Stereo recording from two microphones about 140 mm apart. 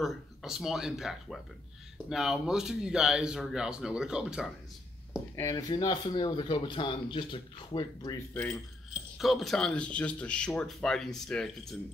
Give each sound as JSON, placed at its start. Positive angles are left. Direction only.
{"t": 0.0, "sound": "speech", "side_deg": 0}
{"t": 5.3, "sound": "speech", "side_deg": 25}
{"t": 8.9, "sound": "speech", "side_deg": 0}